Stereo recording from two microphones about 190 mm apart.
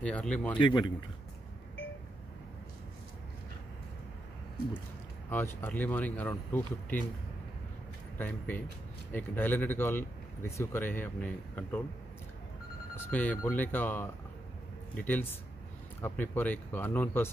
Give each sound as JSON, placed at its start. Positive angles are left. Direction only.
{"t": 0.0, "sound": "speech", "side_deg": 5}
{"t": 0.6, "sound": "speech", "side_deg": 25}
{"t": 5.3, "sound": "speech", "side_deg": 10}
{"t": 8.2, "sound": "speech", "side_deg": 10}
{"t": 12.9, "sound": "speech", "side_deg": 10}